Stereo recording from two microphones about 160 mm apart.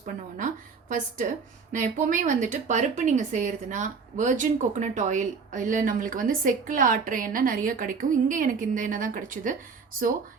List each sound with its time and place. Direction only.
0.0 s a woman's voice: 55° right (ahead or behind)